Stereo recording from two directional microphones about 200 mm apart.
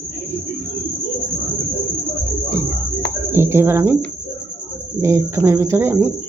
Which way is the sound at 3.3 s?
10° right (ahead or behind).